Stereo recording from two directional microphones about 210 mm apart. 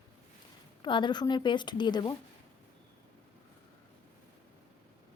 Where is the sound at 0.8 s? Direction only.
20° left (ahead or behind).